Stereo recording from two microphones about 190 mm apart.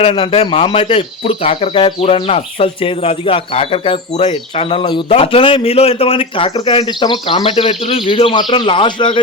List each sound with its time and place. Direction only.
0.0 s speech: 30° left (ahead or behind)